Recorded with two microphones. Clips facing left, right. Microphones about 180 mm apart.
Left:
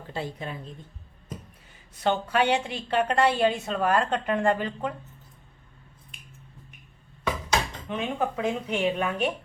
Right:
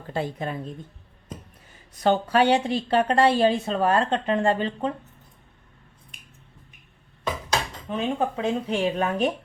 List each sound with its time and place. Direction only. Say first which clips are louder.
0.1 s speech: right 5 dB; 50° right (ahead or behind)
2.0 s a woman's voice: right 4 dB; 40° right (ahead or behind)
7.9 s a woman's voice: right 5 dB; 35° right (ahead or behind)